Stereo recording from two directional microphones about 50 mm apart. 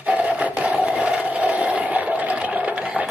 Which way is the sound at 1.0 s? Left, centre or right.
Right.